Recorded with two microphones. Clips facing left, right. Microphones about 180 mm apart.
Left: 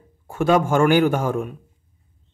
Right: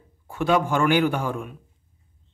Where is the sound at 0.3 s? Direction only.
45° left (ahead or behind).